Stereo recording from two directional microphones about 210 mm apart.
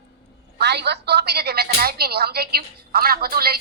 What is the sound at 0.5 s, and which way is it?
Speech, 50° right (ahead or behind).